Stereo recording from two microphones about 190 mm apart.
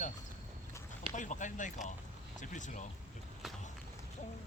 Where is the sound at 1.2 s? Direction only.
40° left (ahead or behind).